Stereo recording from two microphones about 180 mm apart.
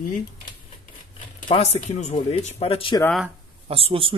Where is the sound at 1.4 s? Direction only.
30° left (ahead or behind).